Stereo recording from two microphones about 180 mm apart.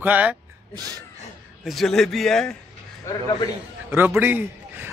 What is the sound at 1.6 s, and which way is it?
Speech, centre (ahead or behind).